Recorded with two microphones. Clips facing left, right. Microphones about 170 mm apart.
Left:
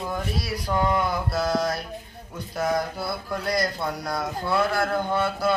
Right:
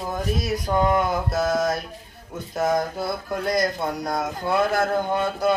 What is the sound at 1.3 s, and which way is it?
Mantra, 45° right (ahead or behind).